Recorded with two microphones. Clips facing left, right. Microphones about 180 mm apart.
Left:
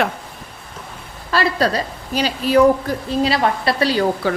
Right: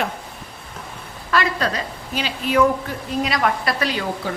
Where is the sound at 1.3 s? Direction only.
35° left (ahead or behind).